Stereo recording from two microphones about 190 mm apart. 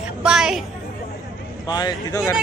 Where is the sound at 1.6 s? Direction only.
20° left (ahead or behind).